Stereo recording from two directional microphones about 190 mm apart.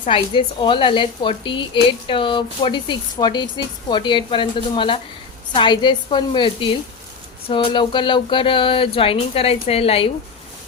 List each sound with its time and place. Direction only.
0.1 s a woman's voice: 25° left (ahead or behind)